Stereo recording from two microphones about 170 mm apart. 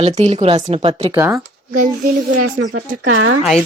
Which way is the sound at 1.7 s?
50° right (ahead or behind).